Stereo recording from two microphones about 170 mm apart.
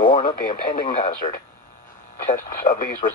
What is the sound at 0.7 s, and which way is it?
Speech, 30° left (ahead or behind).